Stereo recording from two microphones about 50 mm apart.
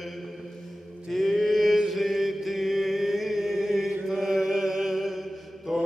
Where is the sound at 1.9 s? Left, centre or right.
Centre.